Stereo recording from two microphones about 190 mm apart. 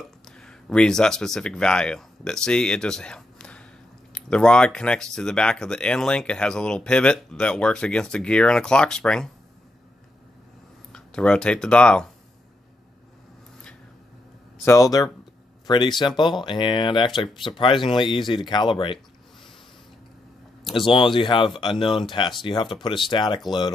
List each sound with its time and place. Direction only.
0.4 s speech: 5° left (ahead or behind)
10.9 s speech: 5° left (ahead or behind)
14.6 s speech: 15° left (ahead or behind)
20.7 s speech: 25° left (ahead or behind)